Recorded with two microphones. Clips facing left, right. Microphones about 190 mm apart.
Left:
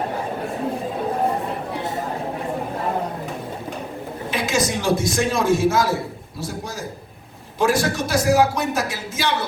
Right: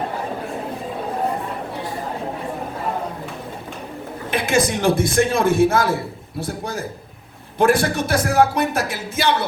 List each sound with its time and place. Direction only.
4.3 s speech: 55° right (ahead or behind)